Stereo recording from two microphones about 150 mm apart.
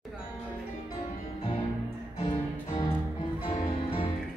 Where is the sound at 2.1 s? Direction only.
35° left (ahead or behind).